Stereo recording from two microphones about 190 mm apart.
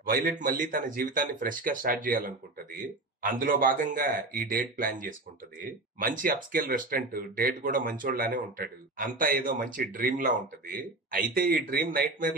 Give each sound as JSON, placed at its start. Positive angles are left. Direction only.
{"t": 0.0, "sound": "speech", "side_deg": -45}